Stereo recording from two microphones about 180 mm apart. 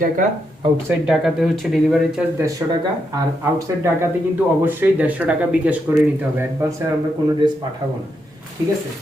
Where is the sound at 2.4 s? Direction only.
20° right (ahead or behind).